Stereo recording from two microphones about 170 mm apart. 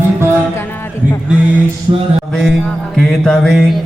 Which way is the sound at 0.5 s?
15° left (ahead or behind).